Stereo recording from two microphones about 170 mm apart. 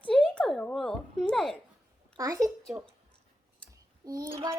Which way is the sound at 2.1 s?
20° right (ahead or behind).